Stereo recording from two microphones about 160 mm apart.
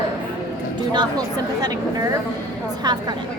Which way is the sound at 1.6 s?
25° right (ahead or behind).